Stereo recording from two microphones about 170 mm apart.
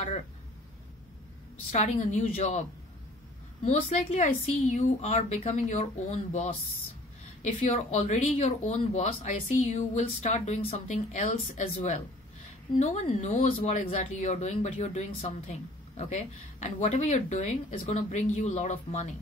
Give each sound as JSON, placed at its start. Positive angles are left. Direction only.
{"t": 1.7, "sound": "speech", "side_deg": 45}
{"t": 3.6, "sound": "speech", "side_deg": 45}